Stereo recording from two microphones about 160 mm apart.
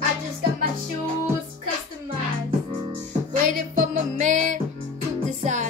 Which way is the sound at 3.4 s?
55° right (ahead or behind).